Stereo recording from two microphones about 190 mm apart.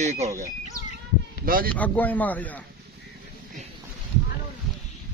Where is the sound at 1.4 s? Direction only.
50° right (ahead or behind).